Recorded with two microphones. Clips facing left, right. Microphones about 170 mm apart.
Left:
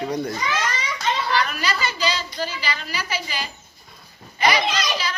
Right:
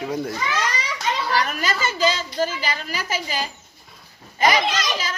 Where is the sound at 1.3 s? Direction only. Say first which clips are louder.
Even; 45° right (ahead or behind).